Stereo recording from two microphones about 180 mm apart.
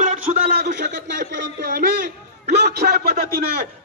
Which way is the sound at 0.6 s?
70° right (ahead or behind).